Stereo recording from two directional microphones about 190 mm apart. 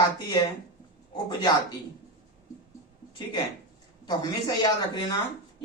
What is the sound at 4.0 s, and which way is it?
Speech, 20° left (ahead or behind).